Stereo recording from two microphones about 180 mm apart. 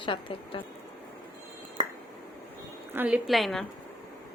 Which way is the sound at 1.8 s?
40° right (ahead or behind).